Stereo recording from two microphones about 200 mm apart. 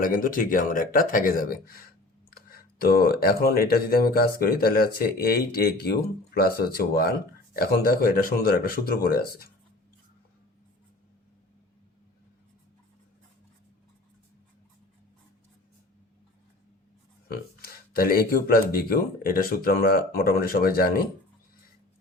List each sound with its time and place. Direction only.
0.0 s speech: 45° left (ahead or behind)
17.2 s a sound: 50° left (ahead or behind)
18.7 s speech: 50° left (ahead or behind)